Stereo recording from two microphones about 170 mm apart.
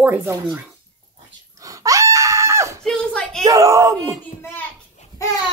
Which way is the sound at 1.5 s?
20° right (ahead or behind).